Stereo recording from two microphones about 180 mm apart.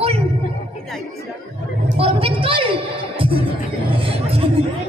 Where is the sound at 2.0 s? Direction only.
30° right (ahead or behind).